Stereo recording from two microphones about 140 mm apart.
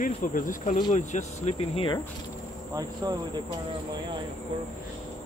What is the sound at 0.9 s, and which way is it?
Speech, 55° left (ahead or behind).